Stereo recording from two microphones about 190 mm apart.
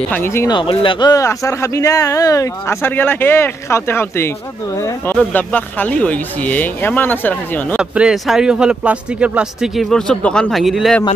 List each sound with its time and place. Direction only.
0.1 s speech: 10° left (ahead or behind)
0.6 s speech: 25° left (ahead or behind); by 7.6 s 10° left (ahead or behind)
7.7 s speech: 5° right (ahead or behind)